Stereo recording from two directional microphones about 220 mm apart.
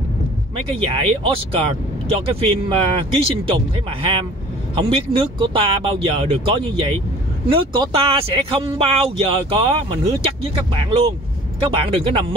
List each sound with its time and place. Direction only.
0.7 s speech: 25° right (ahead or behind)